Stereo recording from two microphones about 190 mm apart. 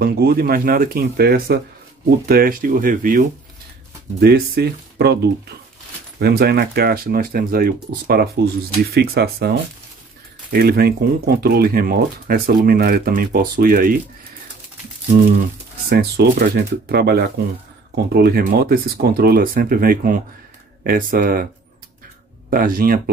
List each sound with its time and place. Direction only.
0.0 s speech: 55° right (ahead or behind)
4.2 s speech: 60° right (ahead or behind)
15.9 s speech: 55° right (ahead or behind)
22.5 s speech: 45° right (ahead or behind)